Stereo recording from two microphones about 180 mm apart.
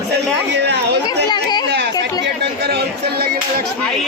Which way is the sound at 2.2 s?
60° right (ahead or behind).